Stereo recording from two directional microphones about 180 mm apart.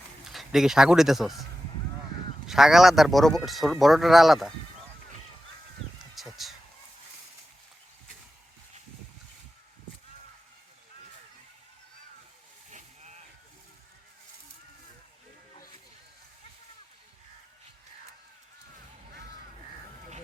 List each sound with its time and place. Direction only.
0.3 s speech: centre (ahead or behind)
2.5 s speech: centre (ahead or behind)
6.1 s a sound: centre (ahead or behind)
12.7 s vehicle: 40° right (ahead or behind)